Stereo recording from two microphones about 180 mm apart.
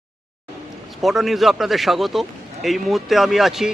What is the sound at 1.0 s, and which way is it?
A man's voice, centre (ahead or behind).